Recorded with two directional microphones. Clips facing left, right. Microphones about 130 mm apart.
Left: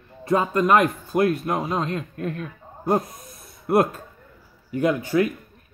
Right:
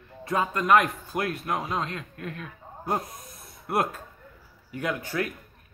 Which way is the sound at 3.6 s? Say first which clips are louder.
Left 7 dB; 35° left (ahead or behind).